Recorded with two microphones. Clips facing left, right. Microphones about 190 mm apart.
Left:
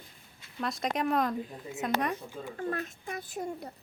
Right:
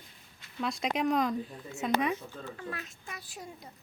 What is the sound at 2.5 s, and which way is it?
Speech, 50° left (ahead or behind).